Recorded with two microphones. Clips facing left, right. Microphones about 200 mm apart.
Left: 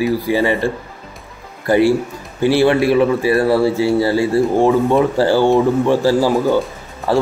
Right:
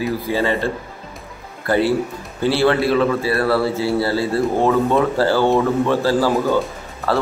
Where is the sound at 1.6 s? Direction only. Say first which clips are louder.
Left 4 dB; 15° left (ahead or behind).